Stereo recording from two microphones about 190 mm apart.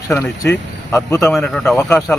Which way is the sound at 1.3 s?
5° left (ahead or behind).